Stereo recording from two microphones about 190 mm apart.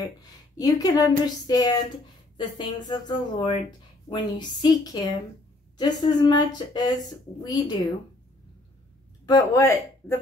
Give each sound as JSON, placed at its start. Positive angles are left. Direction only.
{"t": 0.2, "sound": "speech", "side_deg": 20}
{"t": 9.2, "sound": "speech", "side_deg": 20}